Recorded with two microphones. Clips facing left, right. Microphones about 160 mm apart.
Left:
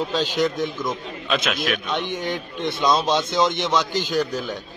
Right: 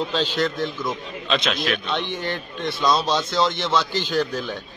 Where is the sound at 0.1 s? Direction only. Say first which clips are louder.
Left 1 dB; 10° left (ahead or behind).